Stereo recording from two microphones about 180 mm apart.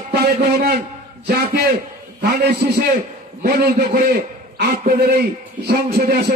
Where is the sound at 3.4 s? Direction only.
60° right (ahead or behind).